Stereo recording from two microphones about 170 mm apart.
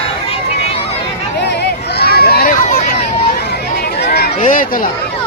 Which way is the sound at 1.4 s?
85° left.